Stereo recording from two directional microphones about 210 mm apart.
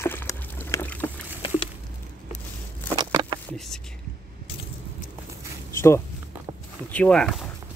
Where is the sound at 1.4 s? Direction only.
25° left (ahead or behind).